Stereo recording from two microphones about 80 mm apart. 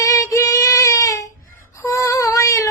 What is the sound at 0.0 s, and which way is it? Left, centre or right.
Child singing, left.